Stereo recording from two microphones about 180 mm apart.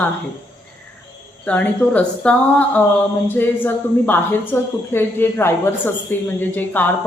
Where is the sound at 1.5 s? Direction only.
10° left (ahead or behind).